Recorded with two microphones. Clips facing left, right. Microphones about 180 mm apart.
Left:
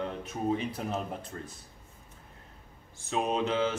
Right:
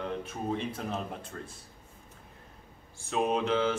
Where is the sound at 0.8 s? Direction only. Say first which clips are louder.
Left 1 dB; 5° left (ahead or behind).